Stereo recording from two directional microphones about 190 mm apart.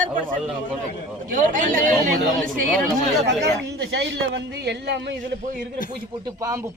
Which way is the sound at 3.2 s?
65° right (ahead or behind).